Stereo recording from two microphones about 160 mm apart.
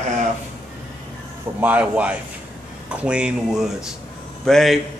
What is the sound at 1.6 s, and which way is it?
Speech, 10° right (ahead or behind).